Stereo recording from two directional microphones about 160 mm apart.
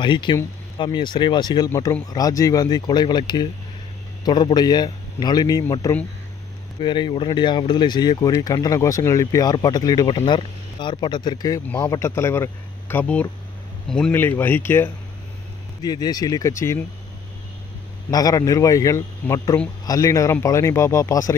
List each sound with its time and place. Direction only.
0.0 s a man's voice: 30° left (ahead or behind)
6.8 s speech: 30° left (ahead or behind); by 14.9 s 15° left (ahead or behind)
15.8 s speech: 25° left (ahead or behind)
18.1 s speech: 25° left (ahead or behind)